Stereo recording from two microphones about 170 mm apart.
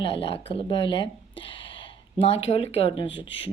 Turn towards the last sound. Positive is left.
turn(degrees=30)  # may be behind; listen again after turning